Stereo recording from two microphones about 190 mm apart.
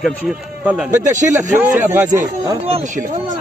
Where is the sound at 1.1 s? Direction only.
40° right (ahead or behind).